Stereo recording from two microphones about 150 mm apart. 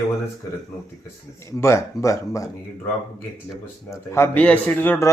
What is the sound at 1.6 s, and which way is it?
Speech, 20° left (ahead or behind).